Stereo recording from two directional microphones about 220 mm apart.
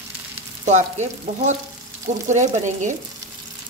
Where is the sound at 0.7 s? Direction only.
30° right (ahead or behind).